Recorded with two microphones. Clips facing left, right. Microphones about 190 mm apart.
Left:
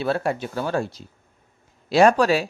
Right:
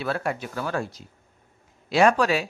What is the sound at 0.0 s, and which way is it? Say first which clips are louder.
Speech: left 4 dB; 30° left (ahead or behind).